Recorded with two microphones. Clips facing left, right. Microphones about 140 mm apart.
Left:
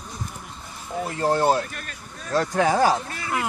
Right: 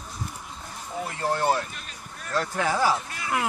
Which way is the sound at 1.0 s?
35° left (ahead or behind).